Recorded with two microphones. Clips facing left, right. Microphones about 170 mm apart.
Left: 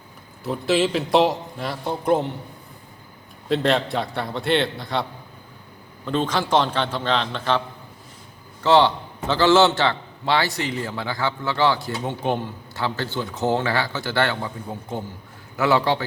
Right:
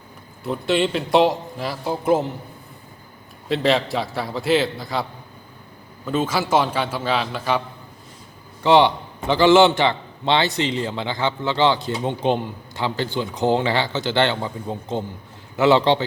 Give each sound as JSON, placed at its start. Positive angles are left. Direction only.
{"t": 0.4, "sound": "a man's voice", "side_deg": 0}
{"t": 3.5, "sound": "a man's voice", "side_deg": 0}
{"t": 6.1, "sound": "a man's voice", "side_deg": -5}
{"t": 8.6, "sound": "a man's voice", "side_deg": -15}